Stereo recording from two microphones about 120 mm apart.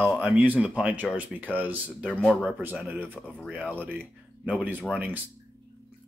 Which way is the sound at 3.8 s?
15° right (ahead or behind).